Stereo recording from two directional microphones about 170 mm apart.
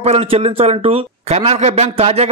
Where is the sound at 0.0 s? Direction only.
35° right (ahead or behind).